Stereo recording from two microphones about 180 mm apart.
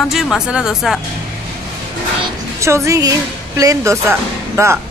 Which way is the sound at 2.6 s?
15° right (ahead or behind).